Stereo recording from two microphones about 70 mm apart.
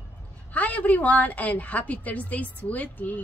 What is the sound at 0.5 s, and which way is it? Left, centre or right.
Speech, left.